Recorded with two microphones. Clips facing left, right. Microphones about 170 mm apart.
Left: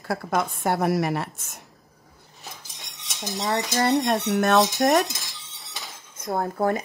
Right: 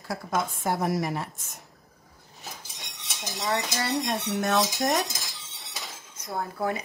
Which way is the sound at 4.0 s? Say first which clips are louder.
Left 6 dB; 65° left (ahead or behind).